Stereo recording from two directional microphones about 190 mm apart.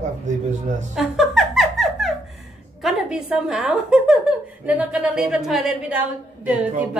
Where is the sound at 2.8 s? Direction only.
Centre (ahead or behind).